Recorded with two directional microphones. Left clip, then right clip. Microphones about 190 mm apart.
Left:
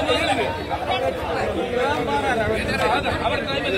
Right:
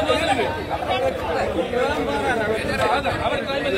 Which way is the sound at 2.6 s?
40° right (ahead or behind).